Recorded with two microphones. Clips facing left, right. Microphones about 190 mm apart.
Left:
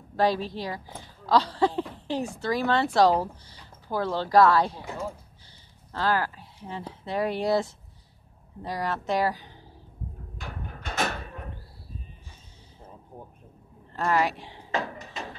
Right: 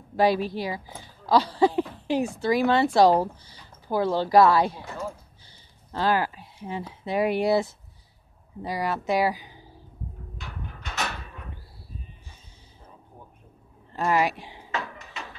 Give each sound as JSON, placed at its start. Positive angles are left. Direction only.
{"t": 0.1, "sound": "speech", "side_deg": -10}
{"t": 5.9, "sound": "speech", "side_deg": -15}
{"t": 8.6, "sound": "speech", "side_deg": -10}
{"t": 10.3, "sound": "a sound", "side_deg": 50}
{"t": 13.9, "sound": "speech", "side_deg": -15}
{"t": 14.7, "sound": "a sound", "side_deg": 35}